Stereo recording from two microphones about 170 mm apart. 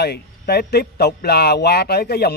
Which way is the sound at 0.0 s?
70° left (ahead or behind).